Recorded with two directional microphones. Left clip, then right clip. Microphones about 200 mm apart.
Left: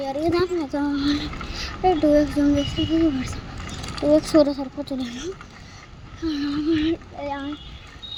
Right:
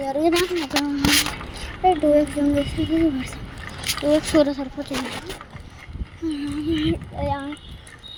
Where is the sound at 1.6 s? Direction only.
5° right (ahead or behind).